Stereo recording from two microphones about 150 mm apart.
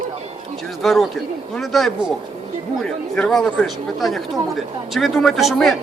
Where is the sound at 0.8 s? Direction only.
Centre (ahead or behind).